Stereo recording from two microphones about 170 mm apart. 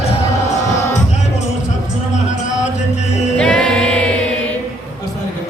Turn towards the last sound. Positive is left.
turn(degrees=5)  # may be behind; listen again after turning